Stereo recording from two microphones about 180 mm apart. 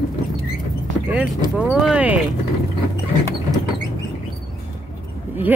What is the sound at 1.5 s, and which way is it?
Speech, 5° right (ahead or behind).